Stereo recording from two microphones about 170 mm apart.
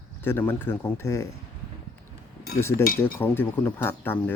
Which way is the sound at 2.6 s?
15° left (ahead or behind).